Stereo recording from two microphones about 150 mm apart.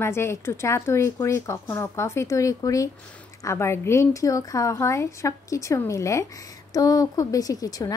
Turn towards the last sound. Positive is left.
turn(degrees=25)  # may be behind; listen again after turning